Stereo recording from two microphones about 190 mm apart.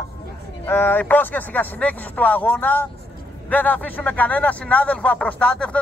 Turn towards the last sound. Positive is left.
turn(degrees=5)  # may be behind; listen again after turning